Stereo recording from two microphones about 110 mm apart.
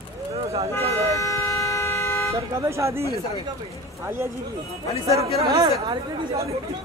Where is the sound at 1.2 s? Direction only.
30° left (ahead or behind).